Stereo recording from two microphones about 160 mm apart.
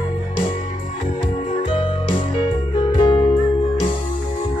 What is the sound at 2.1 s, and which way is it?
Music, 30° left (ahead or behind).